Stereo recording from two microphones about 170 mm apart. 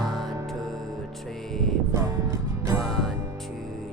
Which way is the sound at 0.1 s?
Centre (ahead or behind).